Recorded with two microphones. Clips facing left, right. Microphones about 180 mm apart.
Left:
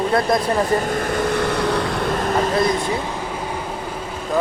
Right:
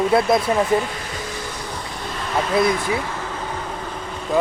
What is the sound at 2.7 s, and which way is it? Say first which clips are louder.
Vehicle: left 1 dB; 20° left (ahead or behind).